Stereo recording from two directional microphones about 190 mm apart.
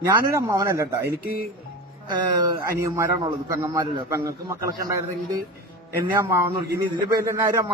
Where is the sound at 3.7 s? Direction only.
20° right (ahead or behind).